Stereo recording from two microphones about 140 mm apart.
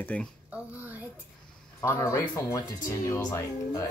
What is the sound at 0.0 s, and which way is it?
Speech, 10° left (ahead or behind).